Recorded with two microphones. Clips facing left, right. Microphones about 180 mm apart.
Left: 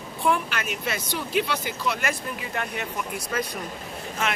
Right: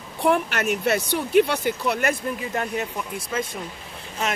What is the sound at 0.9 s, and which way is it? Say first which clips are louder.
Speech: right 8 dB; 55° right (ahead or behind).